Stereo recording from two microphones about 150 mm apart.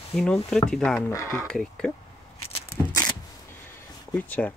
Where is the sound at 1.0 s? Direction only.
20° left (ahead or behind).